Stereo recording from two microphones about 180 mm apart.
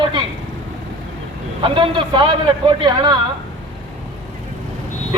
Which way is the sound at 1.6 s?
30° right (ahead or behind).